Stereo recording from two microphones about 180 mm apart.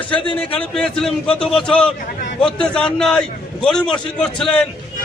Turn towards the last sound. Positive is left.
turn(degrees=5)  # may be behind; listen again after turning